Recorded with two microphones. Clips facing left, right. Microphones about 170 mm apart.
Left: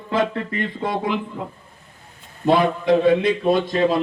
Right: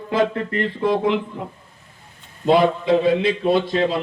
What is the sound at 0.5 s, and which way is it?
Speech, 65° right (ahead or behind).